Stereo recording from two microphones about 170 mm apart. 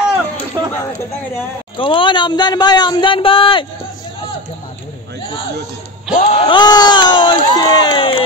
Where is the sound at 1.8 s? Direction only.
30° left (ahead or behind).